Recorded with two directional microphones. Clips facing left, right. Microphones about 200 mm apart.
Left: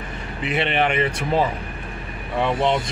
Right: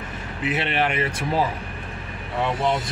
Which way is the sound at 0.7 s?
5° right (ahead or behind).